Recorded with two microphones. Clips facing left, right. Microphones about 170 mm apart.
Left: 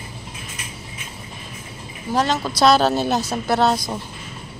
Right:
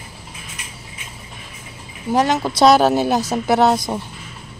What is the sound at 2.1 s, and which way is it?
A woman's voice, 15° right (ahead or behind).